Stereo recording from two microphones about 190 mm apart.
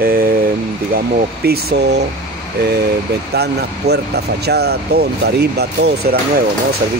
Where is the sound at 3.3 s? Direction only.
60° right (ahead or behind).